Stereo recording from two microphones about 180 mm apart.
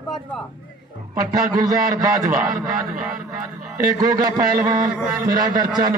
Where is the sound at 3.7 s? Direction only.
20° right (ahead or behind).